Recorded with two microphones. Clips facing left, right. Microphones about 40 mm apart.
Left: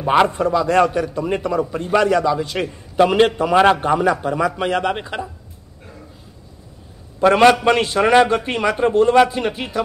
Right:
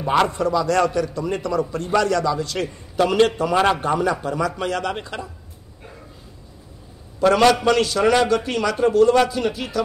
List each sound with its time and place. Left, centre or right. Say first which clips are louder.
0.0 s a man's voice: left 3 dB; centre
7.2 s a man's voice: left 3 dB; left